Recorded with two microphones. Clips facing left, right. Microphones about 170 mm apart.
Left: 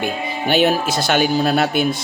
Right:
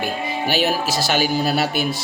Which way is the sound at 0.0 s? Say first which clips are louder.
Left 1 dB; 5° right (ahead or behind).